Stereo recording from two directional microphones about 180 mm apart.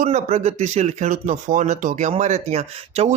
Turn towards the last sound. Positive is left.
turn(degrees=-35)  # may be behind; listen again after turning